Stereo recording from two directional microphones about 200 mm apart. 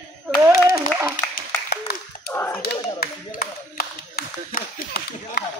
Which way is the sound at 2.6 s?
50° left (ahead or behind).